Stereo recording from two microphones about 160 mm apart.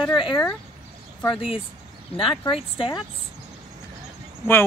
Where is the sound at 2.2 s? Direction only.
35° left (ahead or behind).